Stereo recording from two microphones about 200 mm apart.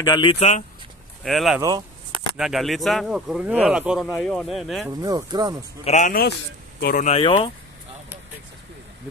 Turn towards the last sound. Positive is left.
turn(degrees=30)  # may be behind; listen again after turning